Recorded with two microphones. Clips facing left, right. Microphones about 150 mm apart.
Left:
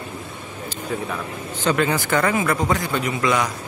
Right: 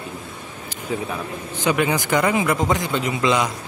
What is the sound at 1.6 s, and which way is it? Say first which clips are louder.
A man's voice: even; 15° right (ahead or behind).